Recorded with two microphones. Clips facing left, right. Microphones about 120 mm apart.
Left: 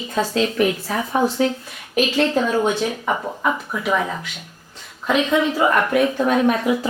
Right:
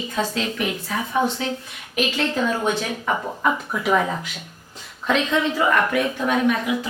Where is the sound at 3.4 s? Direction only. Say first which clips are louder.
Right 2 dB; centre (ahead or behind).